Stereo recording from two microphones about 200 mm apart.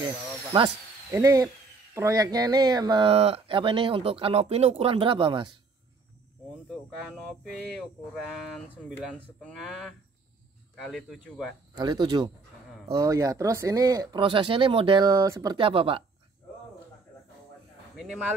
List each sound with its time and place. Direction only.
1.1 s speech: 15° right (ahead or behind)
7.4 s speech: 5° left (ahead or behind)
11.7 s speech: 20° right (ahead or behind)
17.9 s speech: 5° right (ahead or behind)